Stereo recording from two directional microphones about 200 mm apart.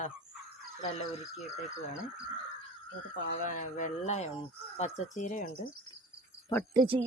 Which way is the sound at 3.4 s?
40° left (ahead or behind).